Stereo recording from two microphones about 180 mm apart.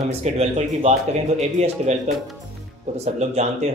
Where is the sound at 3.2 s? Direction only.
40° right (ahead or behind).